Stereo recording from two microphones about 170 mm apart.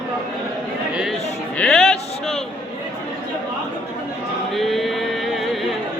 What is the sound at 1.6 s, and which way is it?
Music, centre (ahead or behind).